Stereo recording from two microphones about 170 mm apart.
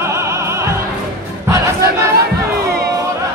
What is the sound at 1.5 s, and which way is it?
Crowd, 20° right (ahead or behind).